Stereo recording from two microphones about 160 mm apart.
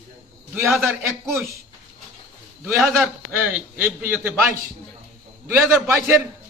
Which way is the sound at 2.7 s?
Centre (ahead or behind).